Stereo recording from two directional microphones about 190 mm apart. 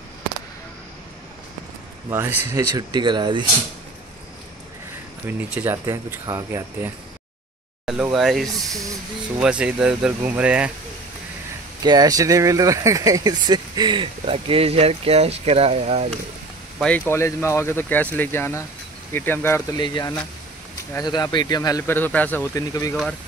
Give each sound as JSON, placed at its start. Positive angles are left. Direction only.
{"t": 2.0, "sound": "speech", "side_deg": -10}
{"t": 5.2, "sound": "speech", "side_deg": -10}
{"t": 7.8, "sound": "speech", "side_deg": 0}
{"t": 11.8, "sound": "speech", "side_deg": -20}
{"t": 16.8, "sound": "speech", "side_deg": 10}
{"t": 19.8, "sound": "speech", "side_deg": 20}